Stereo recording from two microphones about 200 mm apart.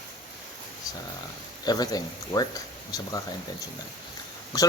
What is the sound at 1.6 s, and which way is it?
Speech, 20° left (ahead or behind).